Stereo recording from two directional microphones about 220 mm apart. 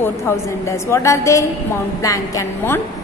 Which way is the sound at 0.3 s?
10° left (ahead or behind).